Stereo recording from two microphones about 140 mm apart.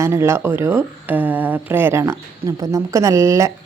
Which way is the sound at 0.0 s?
20° right (ahead or behind).